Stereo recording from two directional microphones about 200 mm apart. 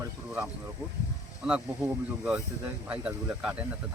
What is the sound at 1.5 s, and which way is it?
Speech, 5° right (ahead or behind).